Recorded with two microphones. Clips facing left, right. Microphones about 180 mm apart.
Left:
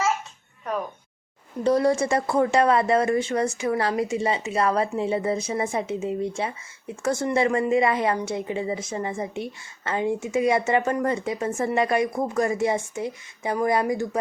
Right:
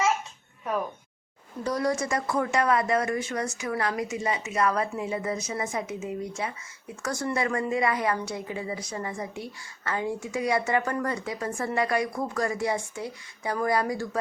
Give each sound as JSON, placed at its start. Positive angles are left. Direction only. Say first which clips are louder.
{"t": 1.6, "sound": "a woman's voice", "louder": "left 7 dB", "side_deg": 25}